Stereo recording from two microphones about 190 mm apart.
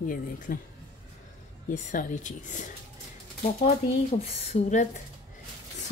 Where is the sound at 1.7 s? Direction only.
40° left (ahead or behind).